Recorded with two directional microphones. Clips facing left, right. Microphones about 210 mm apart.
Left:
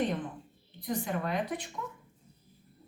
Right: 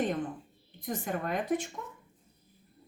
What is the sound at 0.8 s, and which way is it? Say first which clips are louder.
Speech: left 1 dB; 45° right (ahead or behind).